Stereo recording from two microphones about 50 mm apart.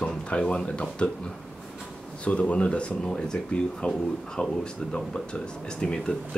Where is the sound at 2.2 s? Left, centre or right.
Left.